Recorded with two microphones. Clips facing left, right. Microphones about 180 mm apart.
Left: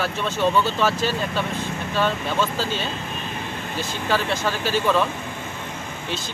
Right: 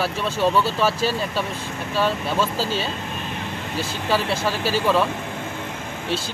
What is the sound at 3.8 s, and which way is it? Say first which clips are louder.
Speech: right 1 dB; 5° right (ahead or behind).